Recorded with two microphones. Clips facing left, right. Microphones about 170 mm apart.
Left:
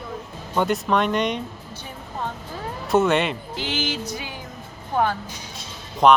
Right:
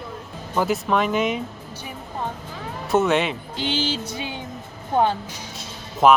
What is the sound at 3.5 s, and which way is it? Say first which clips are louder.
Music: right 4 dB; 30° right (ahead or behind).